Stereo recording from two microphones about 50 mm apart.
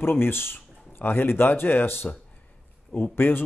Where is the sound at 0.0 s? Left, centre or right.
Left.